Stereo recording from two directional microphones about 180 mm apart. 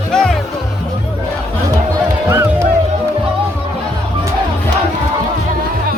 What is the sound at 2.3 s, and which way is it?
Music, 15° right (ahead or behind).